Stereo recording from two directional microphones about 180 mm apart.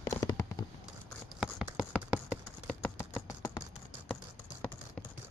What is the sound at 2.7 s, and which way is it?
Typing, 10° left (ahead or behind).